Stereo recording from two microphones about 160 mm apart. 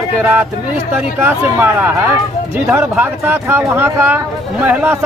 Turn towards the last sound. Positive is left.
turn(degrees=-10)  # may be behind; listen again after turning